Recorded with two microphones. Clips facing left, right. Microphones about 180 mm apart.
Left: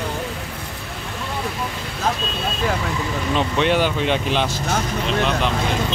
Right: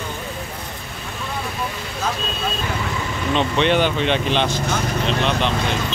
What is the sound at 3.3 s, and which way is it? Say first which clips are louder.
Speech: right 1 dB; 5° left (ahead or behind).